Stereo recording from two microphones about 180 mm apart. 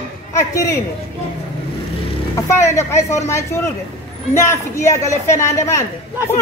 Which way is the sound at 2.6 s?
15° left (ahead or behind).